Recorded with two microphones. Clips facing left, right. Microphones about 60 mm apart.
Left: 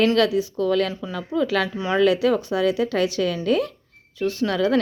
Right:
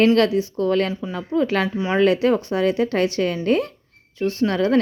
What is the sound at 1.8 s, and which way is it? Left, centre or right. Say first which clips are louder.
Speech: right 1 dB; right.